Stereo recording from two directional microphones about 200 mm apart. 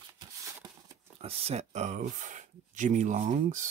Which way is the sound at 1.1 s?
30° right (ahead or behind).